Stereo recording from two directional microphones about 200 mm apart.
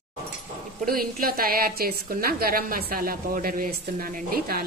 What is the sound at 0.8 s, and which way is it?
A woman's voice, 45° right (ahead or behind).